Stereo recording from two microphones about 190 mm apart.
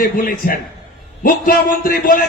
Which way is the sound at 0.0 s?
50° left (ahead or behind).